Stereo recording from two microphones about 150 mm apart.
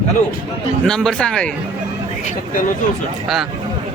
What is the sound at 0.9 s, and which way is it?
Speech, 5° left (ahead or behind).